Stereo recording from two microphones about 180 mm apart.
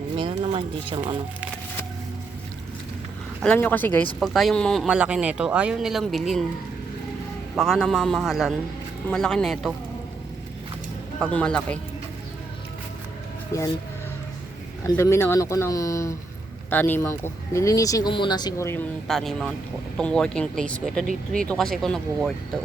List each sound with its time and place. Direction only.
0.2 s a sound: 30° right (ahead or behind)
3.4 s speech: 10° left (ahead or behind)
7.5 s speech: centre (ahead or behind)
11.2 s speech: 5° left (ahead or behind)
13.5 s speech: 15° left (ahead or behind)
14.8 s speech: 15° left (ahead or behind)
19.0 s speech: centre (ahead or behind)